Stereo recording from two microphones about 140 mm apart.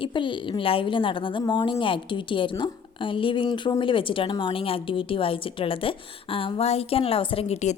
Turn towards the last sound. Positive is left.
turn(degrees=50)  # may be behind; listen again after turning